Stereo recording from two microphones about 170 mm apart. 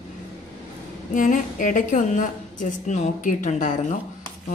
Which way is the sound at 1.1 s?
50° left (ahead or behind).